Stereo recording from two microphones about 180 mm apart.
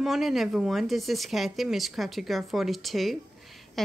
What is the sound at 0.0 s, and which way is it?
Speech, centre (ahead or behind).